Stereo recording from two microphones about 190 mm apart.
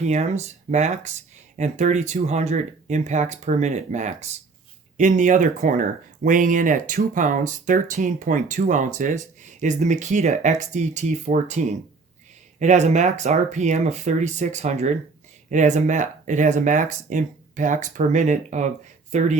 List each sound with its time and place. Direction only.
0.0 s speech: 35° right (ahead or behind)